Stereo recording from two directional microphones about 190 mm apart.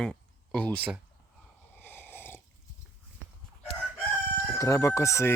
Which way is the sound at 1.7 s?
10° left (ahead or behind).